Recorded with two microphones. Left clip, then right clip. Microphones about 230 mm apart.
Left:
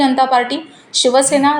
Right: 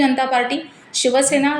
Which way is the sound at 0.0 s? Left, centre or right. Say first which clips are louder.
Left 4 dB; centre.